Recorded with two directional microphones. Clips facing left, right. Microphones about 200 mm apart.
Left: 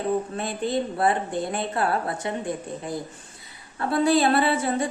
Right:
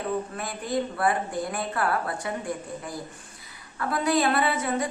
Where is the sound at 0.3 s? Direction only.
25° left (ahead or behind).